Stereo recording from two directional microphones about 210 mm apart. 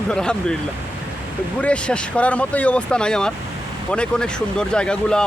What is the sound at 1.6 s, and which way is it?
Speech, 5° left (ahead or behind).